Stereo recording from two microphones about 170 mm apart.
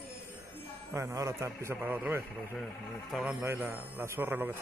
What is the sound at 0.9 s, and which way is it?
A man's voice, 15° right (ahead or behind).